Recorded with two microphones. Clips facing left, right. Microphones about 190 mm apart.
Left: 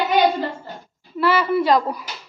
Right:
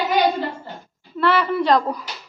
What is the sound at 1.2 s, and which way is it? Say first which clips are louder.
Speech: left 1 dB; 5° left (ahead or behind).